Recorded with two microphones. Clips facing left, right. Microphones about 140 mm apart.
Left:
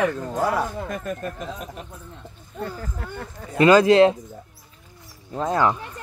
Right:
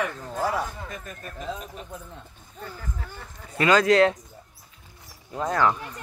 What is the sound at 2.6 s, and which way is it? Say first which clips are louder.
Speech: left 6 dB; 60° left (ahead or behind).